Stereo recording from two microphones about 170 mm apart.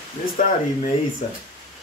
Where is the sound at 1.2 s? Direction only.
45° left (ahead or behind).